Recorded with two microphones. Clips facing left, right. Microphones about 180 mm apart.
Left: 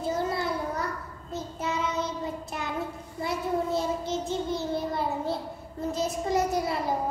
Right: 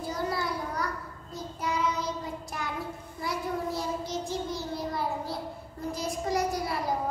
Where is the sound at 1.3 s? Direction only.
25° left (ahead or behind).